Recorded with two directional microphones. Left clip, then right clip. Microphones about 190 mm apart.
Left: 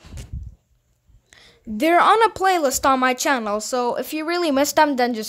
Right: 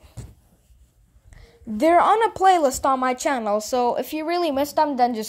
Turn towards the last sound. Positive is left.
turn(degrees=25)  # may be behind; listen again after turning